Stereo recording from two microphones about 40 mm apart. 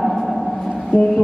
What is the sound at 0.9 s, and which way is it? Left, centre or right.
Music, left.